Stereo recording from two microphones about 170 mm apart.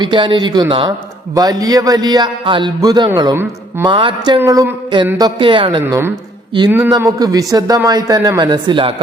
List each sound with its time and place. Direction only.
0.0 s speech: 30° right (ahead or behind)
4.4 s speech: 20° right (ahead or behind)
5.8 s speech: 15° right (ahead or behind); by 9.0 s 30° right (ahead or behind)